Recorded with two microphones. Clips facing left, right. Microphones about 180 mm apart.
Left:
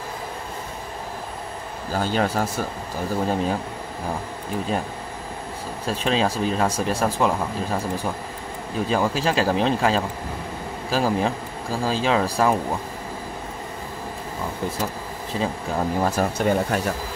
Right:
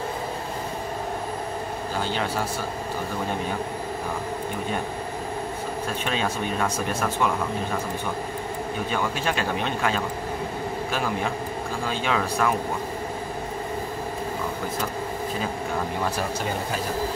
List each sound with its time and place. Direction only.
2.0 s speech: 45° left (ahead or behind)
5.9 s speech: 35° left (ahead or behind)
8.8 s speech: 35° left (ahead or behind)
16.3 s speech: 65° left (ahead or behind)